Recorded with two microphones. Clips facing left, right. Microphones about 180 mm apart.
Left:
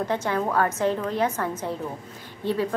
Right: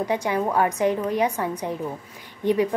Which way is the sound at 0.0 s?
15° right (ahead or behind).